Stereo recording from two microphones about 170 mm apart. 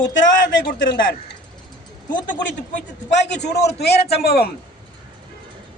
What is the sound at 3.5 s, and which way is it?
Speech, 75° left (ahead or behind).